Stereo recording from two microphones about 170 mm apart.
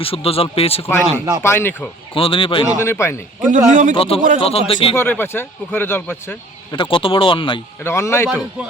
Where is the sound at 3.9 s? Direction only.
35° left (ahead or behind).